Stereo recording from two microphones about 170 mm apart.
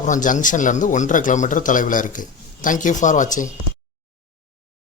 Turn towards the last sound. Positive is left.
turn(degrees=50)  # may be behind; listen again after turning